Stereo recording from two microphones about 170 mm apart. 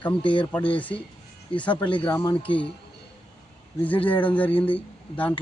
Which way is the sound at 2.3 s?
30° left (ahead or behind).